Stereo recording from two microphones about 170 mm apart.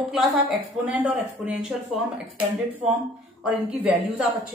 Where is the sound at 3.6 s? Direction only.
5° right (ahead or behind).